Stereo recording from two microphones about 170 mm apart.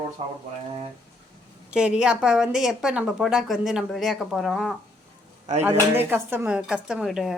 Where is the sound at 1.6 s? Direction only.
5° right (ahead or behind).